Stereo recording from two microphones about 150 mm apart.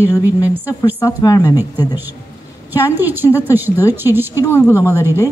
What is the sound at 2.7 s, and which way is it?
A woman's voice, 15° right (ahead or behind).